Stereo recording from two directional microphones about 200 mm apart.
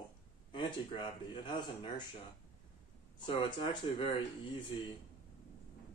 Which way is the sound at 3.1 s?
25° left (ahead or behind).